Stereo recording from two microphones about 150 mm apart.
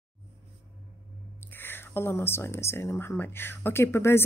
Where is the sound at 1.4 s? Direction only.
15° left (ahead or behind).